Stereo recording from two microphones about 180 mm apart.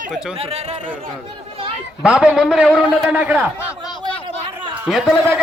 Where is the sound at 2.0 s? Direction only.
5° right (ahead or behind).